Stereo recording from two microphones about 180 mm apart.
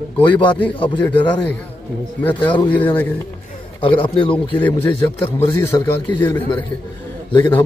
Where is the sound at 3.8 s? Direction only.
25° left (ahead or behind).